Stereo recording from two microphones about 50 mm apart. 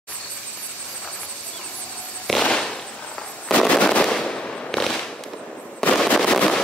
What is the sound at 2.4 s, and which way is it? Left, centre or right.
Firecracker, centre.